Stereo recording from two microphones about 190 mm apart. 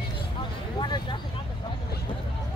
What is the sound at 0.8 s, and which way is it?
Speech, 25° left (ahead or behind).